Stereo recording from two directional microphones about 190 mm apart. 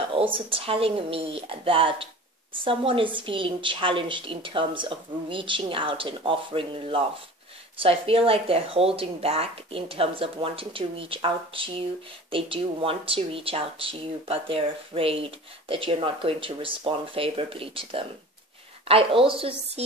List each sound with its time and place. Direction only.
0.1 s a woman's voice: 30° right (ahead or behind)